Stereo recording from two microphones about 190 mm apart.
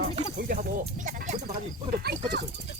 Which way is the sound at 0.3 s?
50° right (ahead or behind).